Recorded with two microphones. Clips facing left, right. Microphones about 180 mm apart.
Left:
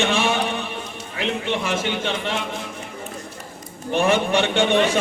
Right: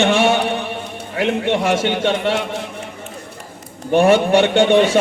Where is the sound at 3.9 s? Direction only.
45° right (ahead or behind).